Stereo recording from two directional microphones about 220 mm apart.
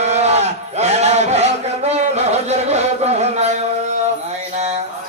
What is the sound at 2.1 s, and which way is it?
Music, 30° right (ahead or behind).